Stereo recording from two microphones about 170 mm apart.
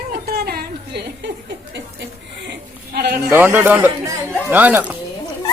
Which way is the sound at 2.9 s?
70° right (ahead or behind).